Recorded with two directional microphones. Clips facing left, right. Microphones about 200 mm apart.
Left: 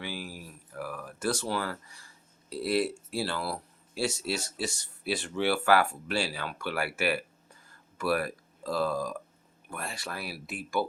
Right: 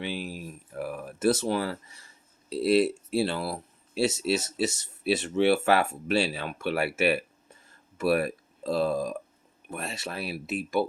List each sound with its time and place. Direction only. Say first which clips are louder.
0.0 s speech: right 5 dB; 20° right (ahead or behind)